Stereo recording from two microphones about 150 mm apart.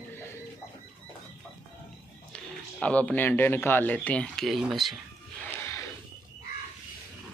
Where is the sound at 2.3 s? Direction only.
10° left (ahead or behind).